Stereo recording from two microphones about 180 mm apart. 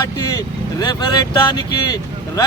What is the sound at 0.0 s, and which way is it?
A man's voice, 20° left (ahead or behind).